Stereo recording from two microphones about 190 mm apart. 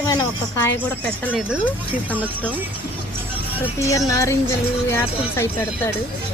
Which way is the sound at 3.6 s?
15° left (ahead or behind).